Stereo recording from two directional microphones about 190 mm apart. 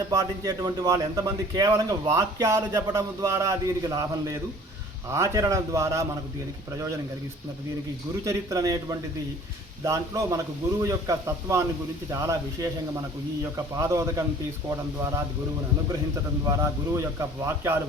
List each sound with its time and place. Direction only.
0.1 s a man's voice: 20° right (ahead or behind)
8.2 s a man's voice: 15° right (ahead or behind)
16.5 s a man's voice: 15° right (ahead or behind)